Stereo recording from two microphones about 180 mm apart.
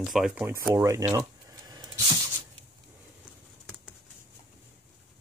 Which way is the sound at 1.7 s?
20° right (ahead or behind).